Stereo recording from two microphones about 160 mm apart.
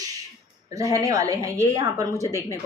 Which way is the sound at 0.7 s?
20° right (ahead or behind).